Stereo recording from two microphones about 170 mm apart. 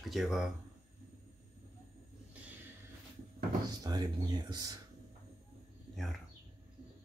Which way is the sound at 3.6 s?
25° right (ahead or behind).